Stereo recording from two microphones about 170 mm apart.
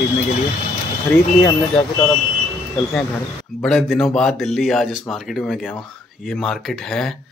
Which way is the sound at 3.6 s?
Centre (ahead or behind).